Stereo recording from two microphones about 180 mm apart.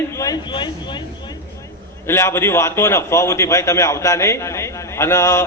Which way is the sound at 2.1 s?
15° left (ahead or behind).